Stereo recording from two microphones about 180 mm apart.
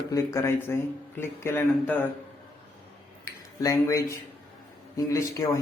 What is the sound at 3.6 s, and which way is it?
A man's voice, 15° left (ahead or behind).